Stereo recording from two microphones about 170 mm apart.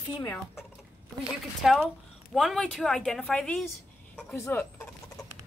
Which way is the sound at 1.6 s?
Centre (ahead or behind).